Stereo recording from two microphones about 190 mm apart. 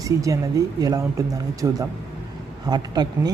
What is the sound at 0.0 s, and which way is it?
Speech, 20° right (ahead or behind).